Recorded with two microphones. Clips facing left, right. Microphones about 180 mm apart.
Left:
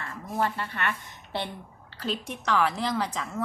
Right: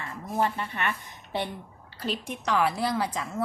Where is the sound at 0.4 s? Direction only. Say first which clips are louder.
Left 1 dB; 15° right (ahead or behind).